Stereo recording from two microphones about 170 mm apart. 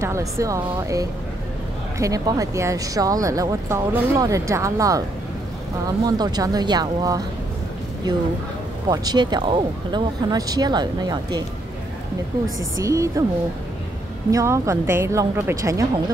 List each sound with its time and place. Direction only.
0.0 s a woman's voice: 15° right (ahead or behind)
6.0 s speech: 25° right (ahead or behind)
12.7 s speech: 20° right (ahead or behind)
14.3 s a woman's voice: 15° right (ahead or behind)